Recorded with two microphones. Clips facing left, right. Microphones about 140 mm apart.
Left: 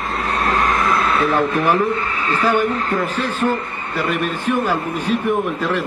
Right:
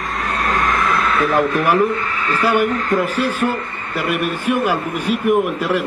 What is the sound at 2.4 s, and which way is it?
A man's voice, 10° right (ahead or behind).